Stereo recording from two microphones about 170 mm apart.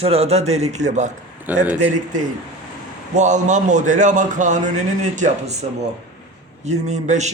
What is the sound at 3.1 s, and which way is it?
A man's voice, 45° right (ahead or behind).